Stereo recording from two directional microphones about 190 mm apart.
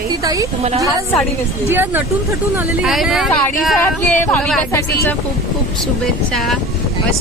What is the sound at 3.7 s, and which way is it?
Speech, 10° left (ahead or behind).